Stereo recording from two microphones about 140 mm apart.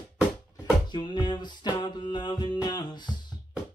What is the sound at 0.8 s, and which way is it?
Music, 30° left (ahead or behind).